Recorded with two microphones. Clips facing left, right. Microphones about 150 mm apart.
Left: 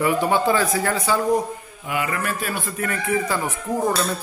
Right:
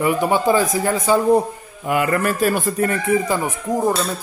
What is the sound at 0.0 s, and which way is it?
A man's voice, 15° right (ahead or behind).